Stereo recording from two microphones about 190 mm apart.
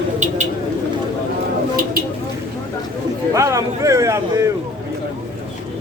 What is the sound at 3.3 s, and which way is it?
Speech, 15° right (ahead or behind).